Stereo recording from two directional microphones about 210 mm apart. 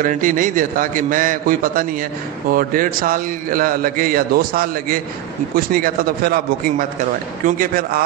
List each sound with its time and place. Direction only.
0.0 s a man's voice: 40° right (ahead or behind)